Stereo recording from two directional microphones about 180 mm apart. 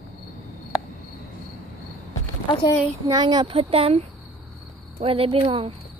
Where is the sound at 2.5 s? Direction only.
25° left (ahead or behind).